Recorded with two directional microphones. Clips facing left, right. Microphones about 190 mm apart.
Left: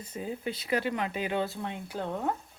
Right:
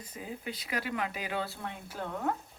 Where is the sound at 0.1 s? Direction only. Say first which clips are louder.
Left 6 dB; 30° left (ahead or behind).